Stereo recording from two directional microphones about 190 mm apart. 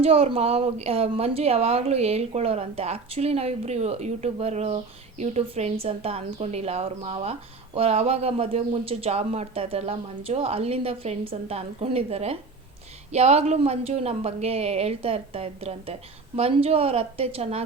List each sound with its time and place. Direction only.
0.0 s a woman's voice: 30° right (ahead or behind)